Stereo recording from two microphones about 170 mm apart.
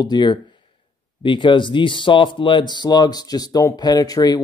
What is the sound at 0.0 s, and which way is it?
Speech, 25° left (ahead or behind).